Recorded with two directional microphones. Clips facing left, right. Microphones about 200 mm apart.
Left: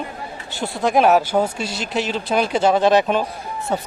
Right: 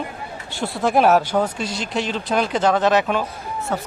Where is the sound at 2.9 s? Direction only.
25° left (ahead or behind).